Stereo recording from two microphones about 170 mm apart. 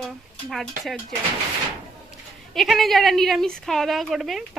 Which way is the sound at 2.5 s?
Centre (ahead or behind).